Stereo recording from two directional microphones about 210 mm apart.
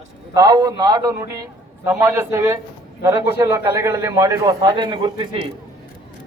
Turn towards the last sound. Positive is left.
turn(degrees=-25)  # may be behind; listen again after turning